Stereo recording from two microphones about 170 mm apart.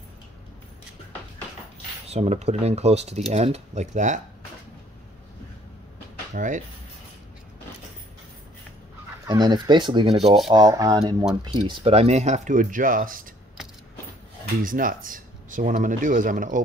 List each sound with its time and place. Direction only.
2.0 s speech: 40° right (ahead or behind)
6.3 s speech: 50° right (ahead or behind)
9.3 s speech: 25° right (ahead or behind)
10.1 s rub: centre (ahead or behind)
10.5 s speech: 20° right (ahead or behind); by 13.3 s 55° right (ahead or behind)
14.6 s speech: 55° right (ahead or behind)